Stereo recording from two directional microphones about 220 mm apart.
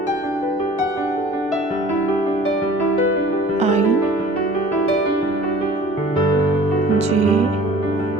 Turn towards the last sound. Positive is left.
turn(degrees=-30)  # may be behind; listen again after turning